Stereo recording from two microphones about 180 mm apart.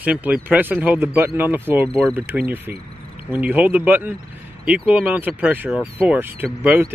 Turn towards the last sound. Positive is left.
turn(degrees=-10)  # may be behind; listen again after turning